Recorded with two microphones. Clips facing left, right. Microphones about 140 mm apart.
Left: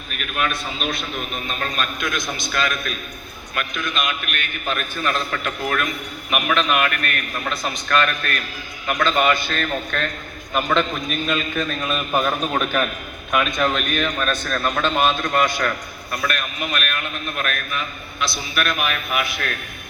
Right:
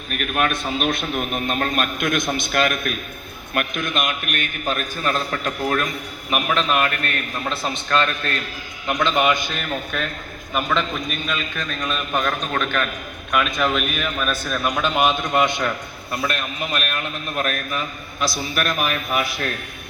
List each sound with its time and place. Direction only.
0.1 s a man's voice: 50° right (ahead or behind); by 15.7 s 20° right (ahead or behind)
16.2 s a man's voice: 30° right (ahead or behind)